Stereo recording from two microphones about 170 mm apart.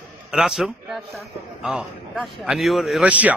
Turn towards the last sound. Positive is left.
turn(degrees=-10)  # may be behind; listen again after turning